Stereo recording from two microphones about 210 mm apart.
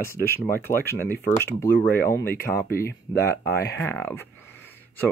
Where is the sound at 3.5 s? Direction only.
50° left (ahead or behind).